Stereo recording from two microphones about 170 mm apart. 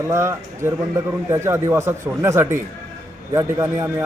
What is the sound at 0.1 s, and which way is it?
Speech, 15° right (ahead or behind).